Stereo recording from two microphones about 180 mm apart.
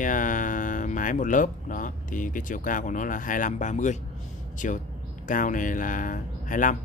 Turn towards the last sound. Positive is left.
turn(degrees=45)  # may be behind; listen again after turning